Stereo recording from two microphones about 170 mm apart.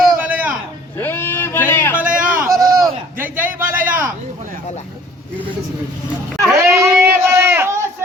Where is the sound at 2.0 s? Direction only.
50° right (ahead or behind).